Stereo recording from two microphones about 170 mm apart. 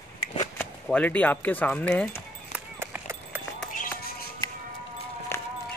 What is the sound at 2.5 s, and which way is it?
Run, 10° right (ahead or behind).